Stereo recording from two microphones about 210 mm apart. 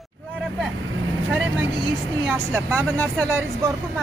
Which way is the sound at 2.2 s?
5° right (ahead or behind).